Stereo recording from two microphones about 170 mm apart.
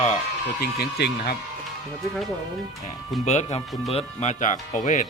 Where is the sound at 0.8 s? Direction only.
70° left (ahead or behind).